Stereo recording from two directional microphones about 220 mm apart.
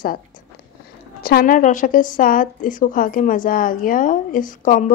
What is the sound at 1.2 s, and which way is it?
A woman's voice, 40° left (ahead or behind).